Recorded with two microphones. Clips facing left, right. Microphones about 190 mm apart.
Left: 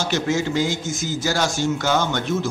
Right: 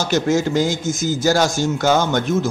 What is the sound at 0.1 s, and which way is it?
A man's voice, 45° right (ahead or behind).